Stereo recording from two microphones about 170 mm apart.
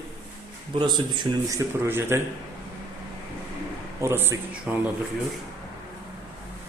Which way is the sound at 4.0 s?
15° right (ahead or behind).